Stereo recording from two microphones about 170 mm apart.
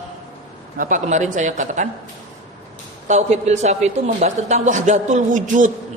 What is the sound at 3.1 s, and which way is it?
A woman's voice, 40° right (ahead or behind).